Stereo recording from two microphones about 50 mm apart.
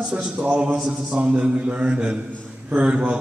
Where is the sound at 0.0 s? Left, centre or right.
Centre.